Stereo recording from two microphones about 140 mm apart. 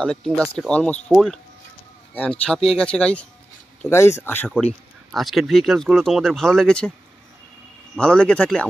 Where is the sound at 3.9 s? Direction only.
20° left (ahead or behind).